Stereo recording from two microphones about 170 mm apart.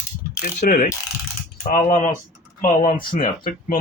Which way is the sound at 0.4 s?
50° left (ahead or behind).